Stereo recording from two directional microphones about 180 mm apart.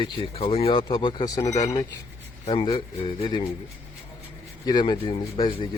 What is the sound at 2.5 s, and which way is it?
Speech, 25° left (ahead or behind).